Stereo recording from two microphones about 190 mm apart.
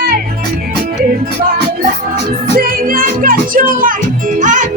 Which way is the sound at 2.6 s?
50° right (ahead or behind).